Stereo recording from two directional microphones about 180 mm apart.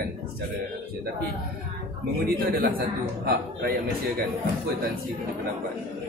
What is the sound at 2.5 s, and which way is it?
A man's voice, 55° right (ahead or behind).